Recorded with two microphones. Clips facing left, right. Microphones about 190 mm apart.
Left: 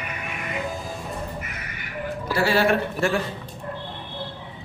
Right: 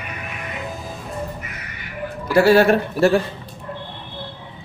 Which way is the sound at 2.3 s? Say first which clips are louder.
Right 7 dB; 45° right (ahead or behind).